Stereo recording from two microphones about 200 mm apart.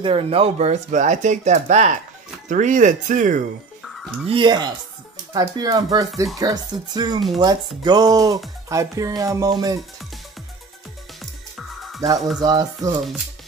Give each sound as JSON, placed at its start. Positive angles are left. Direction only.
{"t": 0.0, "sound": "speech", "side_deg": -30}
{"t": 3.9, "sound": "music", "side_deg": 0}
{"t": 4.3, "sound": "speech", "side_deg": -20}
{"t": 8.6, "sound": "music", "side_deg": -15}
{"t": 11.5, "sound": "music", "side_deg": 0}
{"t": 12.4, "sound": "speech", "side_deg": -20}